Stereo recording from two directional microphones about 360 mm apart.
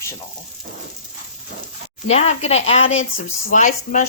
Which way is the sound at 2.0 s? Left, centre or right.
Centre.